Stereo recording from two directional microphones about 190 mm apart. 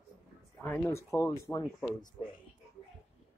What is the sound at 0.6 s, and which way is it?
Speech, 15° left (ahead or behind).